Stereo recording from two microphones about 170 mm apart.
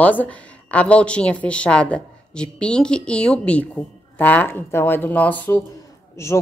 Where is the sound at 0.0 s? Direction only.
10° left (ahead or behind).